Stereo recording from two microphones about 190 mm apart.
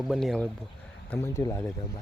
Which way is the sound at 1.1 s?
15° left (ahead or behind).